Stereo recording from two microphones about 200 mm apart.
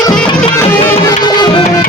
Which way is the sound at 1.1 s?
20° left (ahead or behind).